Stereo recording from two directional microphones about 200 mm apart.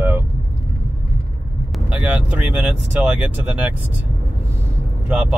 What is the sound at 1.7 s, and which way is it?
Vehicle, 5° right (ahead or behind).